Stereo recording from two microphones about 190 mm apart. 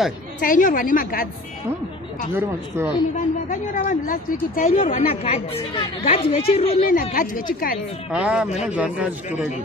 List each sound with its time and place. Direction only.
0.4 s a woman's voice: 45° left (ahead or behind)
2.3 s speech: 15° right (ahead or behind)
3.4 s a woman's voice: 45° left (ahead or behind)
4.7 s a woman's voice: 35° left (ahead or behind)
6.9 s a woman's voice: 45° left (ahead or behind)
8.1 s speech: 5° right (ahead or behind)